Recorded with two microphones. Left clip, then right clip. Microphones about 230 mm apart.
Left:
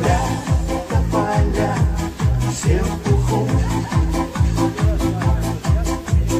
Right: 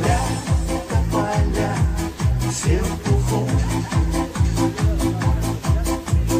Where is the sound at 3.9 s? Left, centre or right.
Right.